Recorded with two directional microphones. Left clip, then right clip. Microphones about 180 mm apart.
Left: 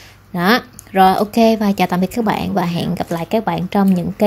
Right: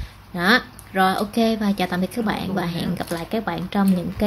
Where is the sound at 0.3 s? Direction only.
40° left (ahead or behind).